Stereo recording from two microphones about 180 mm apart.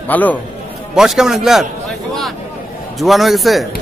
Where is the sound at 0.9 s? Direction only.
Centre (ahead or behind).